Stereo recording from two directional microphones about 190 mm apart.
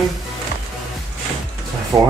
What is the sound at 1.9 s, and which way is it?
Speech, 20° right (ahead or behind).